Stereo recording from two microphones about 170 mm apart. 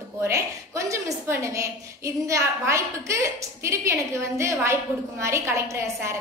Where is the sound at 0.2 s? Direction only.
20° right (ahead or behind).